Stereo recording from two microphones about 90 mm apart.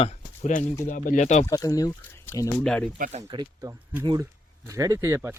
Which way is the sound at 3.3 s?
60° right (ahead or behind).